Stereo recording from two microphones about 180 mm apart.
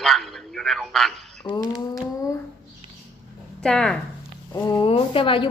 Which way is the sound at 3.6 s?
5° left (ahead or behind).